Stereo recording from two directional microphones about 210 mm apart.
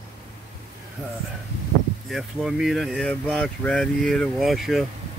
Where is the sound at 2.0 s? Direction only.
Centre (ahead or behind).